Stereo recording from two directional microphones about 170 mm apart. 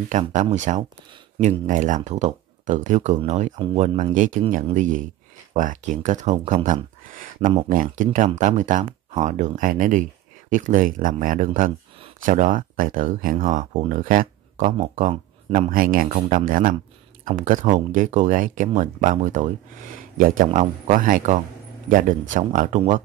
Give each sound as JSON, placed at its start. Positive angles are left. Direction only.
{"t": 0.1, "sound": "speech", "side_deg": -45}
{"t": 20.4, "sound": "speech", "side_deg": -40}